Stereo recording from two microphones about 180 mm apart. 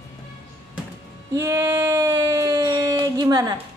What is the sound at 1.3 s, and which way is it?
Speech, 15° right (ahead or behind).